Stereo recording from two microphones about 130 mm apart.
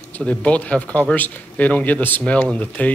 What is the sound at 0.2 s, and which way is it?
Speech, 10° left (ahead or behind).